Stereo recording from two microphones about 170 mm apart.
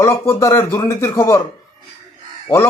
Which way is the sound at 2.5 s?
15° left (ahead or behind).